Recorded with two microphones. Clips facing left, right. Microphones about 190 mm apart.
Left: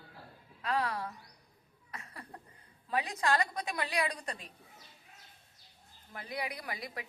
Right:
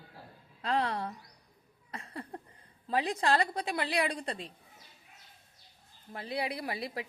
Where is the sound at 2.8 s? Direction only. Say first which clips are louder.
Right 3 dB; 30° right (ahead or behind).